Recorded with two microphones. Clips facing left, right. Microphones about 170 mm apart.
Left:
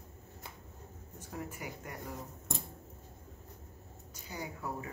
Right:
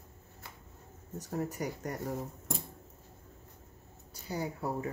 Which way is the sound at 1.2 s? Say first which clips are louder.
Right 8 dB; 40° right (ahead or behind).